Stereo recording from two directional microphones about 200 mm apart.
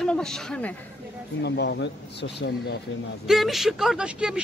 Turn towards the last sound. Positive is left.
turn(degrees=-5)  # may be behind; listen again after turning